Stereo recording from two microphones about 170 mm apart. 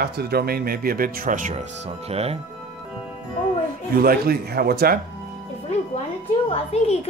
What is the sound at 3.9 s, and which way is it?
Speech, 60° right (ahead or behind).